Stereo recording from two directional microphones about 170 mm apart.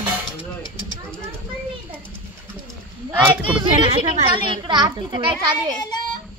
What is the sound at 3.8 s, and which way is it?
Speech, 30° right (ahead or behind).